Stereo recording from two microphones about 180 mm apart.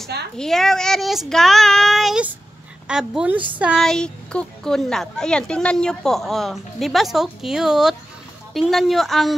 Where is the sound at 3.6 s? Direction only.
Centre (ahead or behind).